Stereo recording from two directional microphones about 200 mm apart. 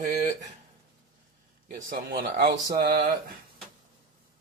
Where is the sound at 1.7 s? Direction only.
50° right (ahead or behind).